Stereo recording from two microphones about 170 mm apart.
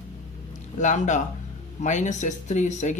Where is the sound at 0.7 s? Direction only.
45° left (ahead or behind).